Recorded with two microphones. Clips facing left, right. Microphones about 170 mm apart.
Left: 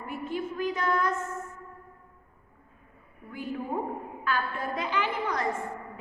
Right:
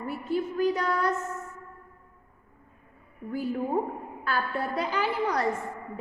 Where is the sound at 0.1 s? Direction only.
40° right (ahead or behind).